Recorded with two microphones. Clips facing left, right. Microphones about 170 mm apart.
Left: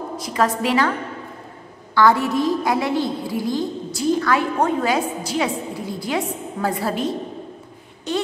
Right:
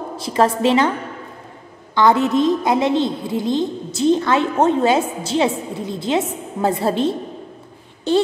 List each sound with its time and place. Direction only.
0.2 s a woman's voice: 30° right (ahead or behind)
2.0 s a woman's voice: 20° right (ahead or behind)